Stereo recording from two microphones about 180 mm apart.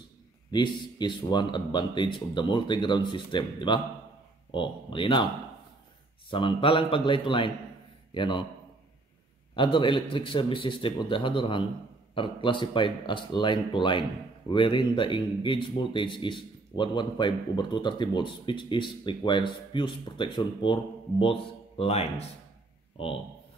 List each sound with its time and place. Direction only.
0.5 s speech: 25° left (ahead or behind)
6.3 s a man's voice: 30° left (ahead or behind)
9.6 s speech: 30° left (ahead or behind)